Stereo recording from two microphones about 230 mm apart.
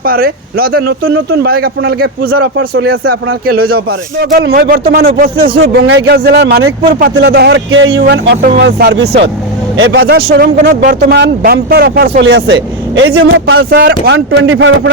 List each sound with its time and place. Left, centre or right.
0.0 s speech: right
0.9 s speech: right
1.3 s speech: right
2.4 s speech: right
2.8 s speech: right
13.6 s speech: right
14.0 s speech: right